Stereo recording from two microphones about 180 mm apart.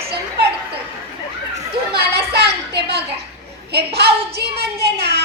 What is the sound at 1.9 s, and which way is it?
Child singing, 65° right (ahead or behind).